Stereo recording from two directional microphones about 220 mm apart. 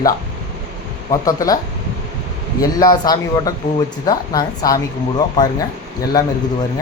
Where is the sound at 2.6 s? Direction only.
15° left (ahead or behind).